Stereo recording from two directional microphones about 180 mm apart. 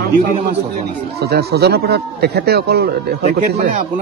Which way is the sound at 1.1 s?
65° right (ahead or behind).